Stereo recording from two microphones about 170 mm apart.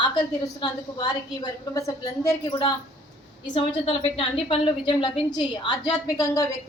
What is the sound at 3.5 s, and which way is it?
A woman's voice, 30° left (ahead or behind).